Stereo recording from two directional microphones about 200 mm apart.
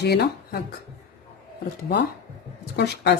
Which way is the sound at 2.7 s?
55° left (ahead or behind).